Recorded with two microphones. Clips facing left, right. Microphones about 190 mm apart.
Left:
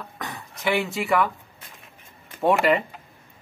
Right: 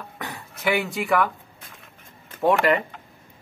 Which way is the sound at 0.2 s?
5° right (ahead or behind).